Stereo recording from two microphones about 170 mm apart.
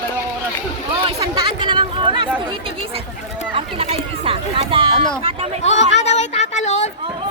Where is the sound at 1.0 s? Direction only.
30° right (ahead or behind).